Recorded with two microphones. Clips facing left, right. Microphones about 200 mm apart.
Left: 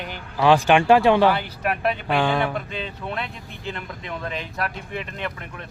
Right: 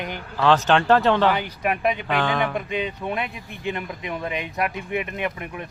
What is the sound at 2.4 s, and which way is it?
Speech, 10° right (ahead or behind).